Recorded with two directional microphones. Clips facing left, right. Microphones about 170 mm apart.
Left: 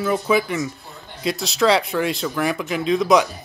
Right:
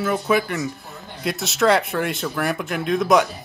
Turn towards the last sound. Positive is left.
turn(degrees=0)  # may be behind; listen again after turning